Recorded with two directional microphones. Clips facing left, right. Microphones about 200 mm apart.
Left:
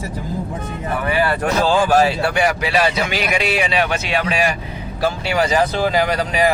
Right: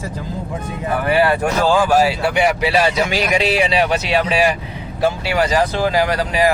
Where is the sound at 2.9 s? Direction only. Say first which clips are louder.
Right 2 dB; 40° right (ahead or behind).